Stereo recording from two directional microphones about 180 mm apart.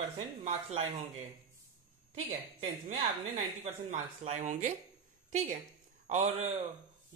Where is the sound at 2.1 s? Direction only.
35° right (ahead or behind).